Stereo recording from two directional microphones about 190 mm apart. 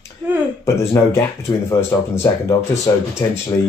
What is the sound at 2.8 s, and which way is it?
Speech, 15° left (ahead or behind).